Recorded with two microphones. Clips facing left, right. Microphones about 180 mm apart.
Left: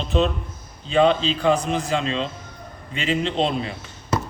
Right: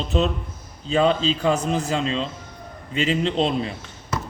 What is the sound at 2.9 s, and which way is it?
Speech, 40° right (ahead or behind).